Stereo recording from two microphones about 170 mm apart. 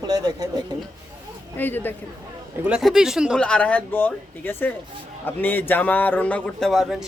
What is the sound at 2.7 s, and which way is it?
Speech, 5° right (ahead or behind).